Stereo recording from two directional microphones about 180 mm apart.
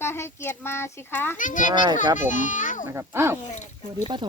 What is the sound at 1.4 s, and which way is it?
A child's voice, 45° left (ahead or behind).